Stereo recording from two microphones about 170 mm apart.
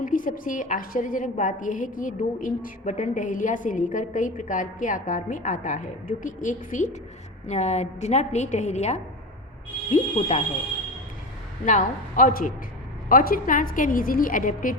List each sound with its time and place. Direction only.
0.0 s a woman's voice: 50° left (ahead or behind)
11.6 s a woman's voice: 50° left (ahead or behind)